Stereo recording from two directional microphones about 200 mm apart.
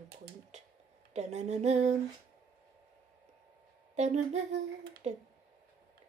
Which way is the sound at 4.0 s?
35° right (ahead or behind).